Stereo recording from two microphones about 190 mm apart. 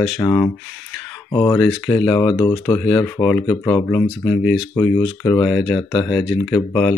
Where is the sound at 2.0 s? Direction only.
20° left (ahead or behind).